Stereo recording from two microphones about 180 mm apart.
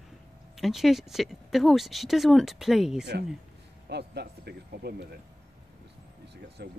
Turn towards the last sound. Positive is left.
turn(degrees=-70)  # may be behind; listen again after turning